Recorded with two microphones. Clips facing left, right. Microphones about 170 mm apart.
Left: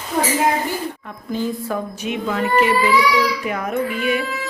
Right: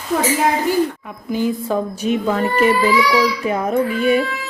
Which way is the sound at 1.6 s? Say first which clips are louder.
Right 5 dB; 30° right (ahead or behind).